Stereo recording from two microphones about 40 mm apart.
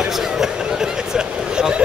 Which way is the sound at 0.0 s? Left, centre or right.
Centre.